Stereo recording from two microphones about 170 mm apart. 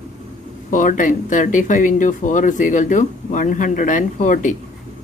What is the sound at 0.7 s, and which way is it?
Speech, 50° left (ahead or behind).